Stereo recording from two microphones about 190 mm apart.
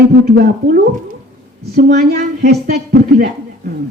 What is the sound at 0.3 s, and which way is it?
A woman's voice, 50° right (ahead or behind).